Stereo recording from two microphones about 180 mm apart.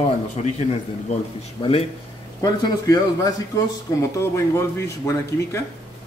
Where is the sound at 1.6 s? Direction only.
35° left (ahead or behind).